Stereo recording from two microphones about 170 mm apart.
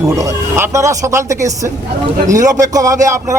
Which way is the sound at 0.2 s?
15° right (ahead or behind).